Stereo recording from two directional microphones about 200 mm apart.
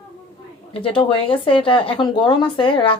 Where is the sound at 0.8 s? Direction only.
25° left (ahead or behind).